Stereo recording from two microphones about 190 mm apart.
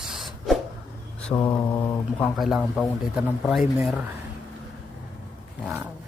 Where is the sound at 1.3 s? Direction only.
25° left (ahead or behind).